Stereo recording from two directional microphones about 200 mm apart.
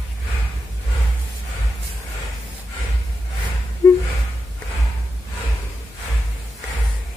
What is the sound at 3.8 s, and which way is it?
Gasp, 15° left (ahead or behind).